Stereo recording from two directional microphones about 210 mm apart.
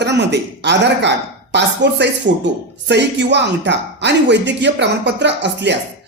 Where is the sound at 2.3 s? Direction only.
40° right (ahead or behind).